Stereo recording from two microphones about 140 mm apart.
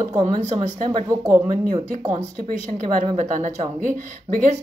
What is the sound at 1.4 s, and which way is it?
A woman's voice, 60° right (ahead or behind).